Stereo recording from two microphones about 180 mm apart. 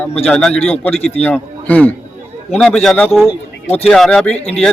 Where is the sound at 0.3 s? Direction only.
5° left (ahead or behind).